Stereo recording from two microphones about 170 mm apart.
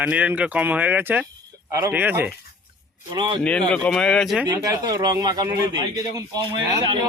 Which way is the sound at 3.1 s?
25° right (ahead or behind).